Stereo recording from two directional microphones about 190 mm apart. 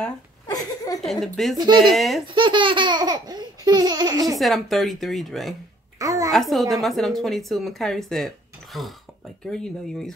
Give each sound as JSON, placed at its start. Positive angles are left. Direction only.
{"t": 1.0, "sound": "a woman's voice", "side_deg": 0}
{"t": 1.6, "sound": "laughter", "side_deg": -25}
{"t": 2.0, "sound": "a woman's voice", "side_deg": 0}
{"t": 2.3, "sound": "laughter", "side_deg": -25}
{"t": 4.4, "sound": "a woman's voice", "side_deg": 0}
{"t": 5.9, "sound": "a child's voice", "side_deg": -20}
{"t": 6.3, "sound": "a woman's voice", "side_deg": 0}